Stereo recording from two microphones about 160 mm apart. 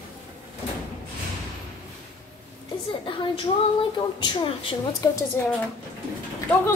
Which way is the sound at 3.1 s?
30° left (ahead or behind).